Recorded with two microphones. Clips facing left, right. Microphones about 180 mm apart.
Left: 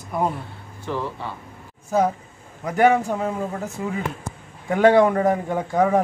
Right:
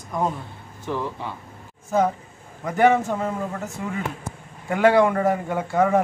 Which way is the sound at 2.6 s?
15° left (ahead or behind).